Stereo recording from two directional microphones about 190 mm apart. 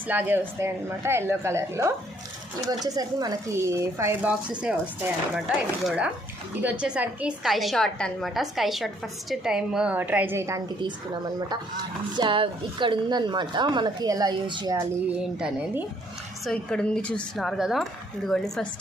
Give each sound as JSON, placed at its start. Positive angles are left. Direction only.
{"t": 0.1, "sound": "a woman's voice", "side_deg": -10}
{"t": 15.2, "sound": "a woman's voice", "side_deg": -5}